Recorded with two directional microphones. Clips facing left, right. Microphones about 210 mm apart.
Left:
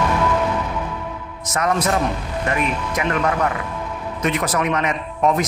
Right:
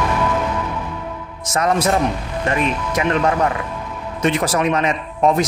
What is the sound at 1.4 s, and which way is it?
Speech, 30° right (ahead or behind).